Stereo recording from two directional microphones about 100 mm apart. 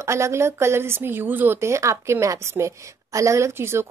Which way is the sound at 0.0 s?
30° right (ahead or behind).